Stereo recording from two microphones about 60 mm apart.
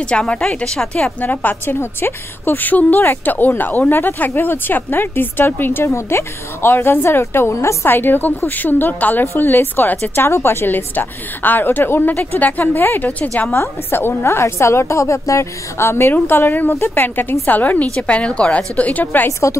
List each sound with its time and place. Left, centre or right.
0.0 s a woman's voice: centre
1.2 s a woman's voice: left
1.8 s a woman's voice: left
5.9 s a woman's voice: left
10.2 s a woman's voice: left
13.8 s a woman's voice: left
19.4 s a woman's voice: left